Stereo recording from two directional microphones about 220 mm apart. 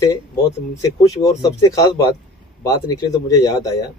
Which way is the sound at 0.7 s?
15° left (ahead or behind).